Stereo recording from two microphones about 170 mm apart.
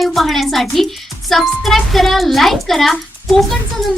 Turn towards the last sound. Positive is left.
turn(degrees=0)  # may be behind; listen again after turning